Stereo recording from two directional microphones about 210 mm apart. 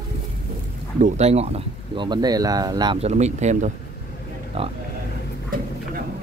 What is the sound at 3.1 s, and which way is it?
Speech, 35° right (ahead or behind).